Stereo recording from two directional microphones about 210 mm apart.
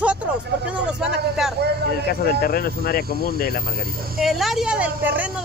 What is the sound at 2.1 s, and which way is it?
Cricket, 45° left (ahead or behind).